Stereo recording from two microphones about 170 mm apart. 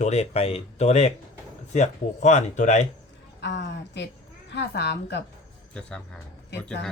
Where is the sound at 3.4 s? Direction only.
90° left.